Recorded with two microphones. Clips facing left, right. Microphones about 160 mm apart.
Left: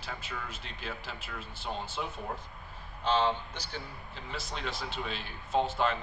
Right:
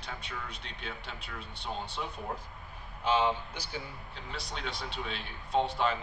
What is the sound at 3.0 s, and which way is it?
Speech, 10° right (ahead or behind).